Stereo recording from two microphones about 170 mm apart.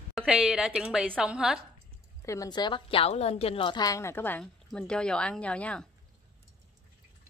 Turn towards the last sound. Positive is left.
turn(degrees=5)  # may be behind; listen again after turning